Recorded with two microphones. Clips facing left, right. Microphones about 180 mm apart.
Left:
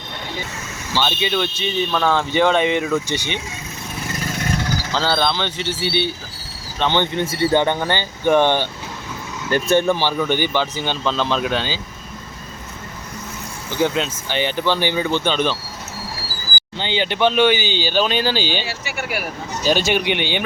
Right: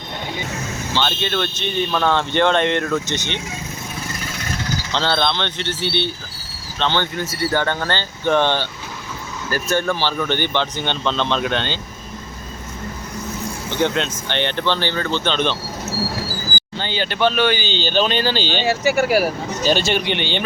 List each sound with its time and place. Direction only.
0.9 s speech: 10° left (ahead or behind)
4.9 s speech: 5° left (ahead or behind)
9.5 s speech: 25° left (ahead or behind); by 11.8 s 5° left (ahead or behind)
13.7 s speech: 5° left (ahead or behind)
16.7 s speech: 20° left (ahead or behind)
18.6 s speech: 40° right (ahead or behind)
19.6 s speech: 10° left (ahead or behind)